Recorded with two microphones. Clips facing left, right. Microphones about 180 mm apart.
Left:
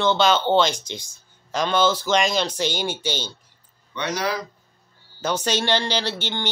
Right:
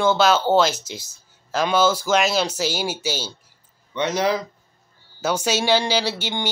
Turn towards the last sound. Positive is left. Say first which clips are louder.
# right 2 dB
turn(degrees=-10)  # may be behind; listen again after turning